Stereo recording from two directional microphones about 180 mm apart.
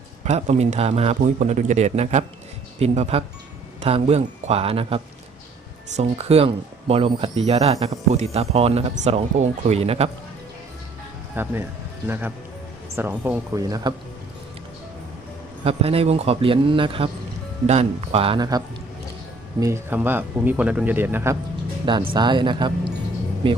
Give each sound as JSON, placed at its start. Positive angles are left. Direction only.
{"t": 0.3, "sound": "speech", "side_deg": -40}
{"t": 6.0, "sound": "speech", "side_deg": -35}
{"t": 11.4, "sound": "speech", "side_deg": -10}
{"t": 15.6, "sound": "speech", "side_deg": -35}
{"t": 21.8, "sound": "speech", "side_deg": -25}